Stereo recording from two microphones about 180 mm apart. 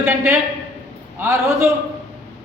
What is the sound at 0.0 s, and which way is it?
A man's voice, 10° right (ahead or behind).